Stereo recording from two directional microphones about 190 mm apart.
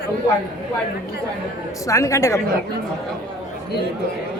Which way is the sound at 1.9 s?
15° left (ahead or behind).